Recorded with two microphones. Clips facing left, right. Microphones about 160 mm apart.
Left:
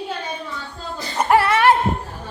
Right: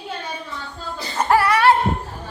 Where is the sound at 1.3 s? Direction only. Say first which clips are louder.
Left 1 dB; 25° left (ahead or behind).